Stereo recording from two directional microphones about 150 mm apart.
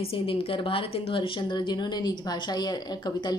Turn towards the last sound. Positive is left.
turn(degrees=30)  # may be behind; listen again after turning